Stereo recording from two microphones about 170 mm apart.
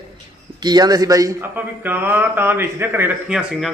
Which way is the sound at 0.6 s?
25° right (ahead or behind).